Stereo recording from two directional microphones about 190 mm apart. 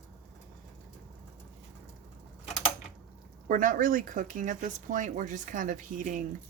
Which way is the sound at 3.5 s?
45° right (ahead or behind).